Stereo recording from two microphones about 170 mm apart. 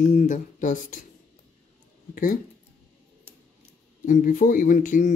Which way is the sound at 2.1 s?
55° left (ahead or behind).